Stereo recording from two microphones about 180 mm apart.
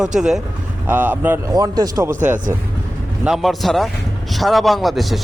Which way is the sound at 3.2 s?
Centre (ahead or behind).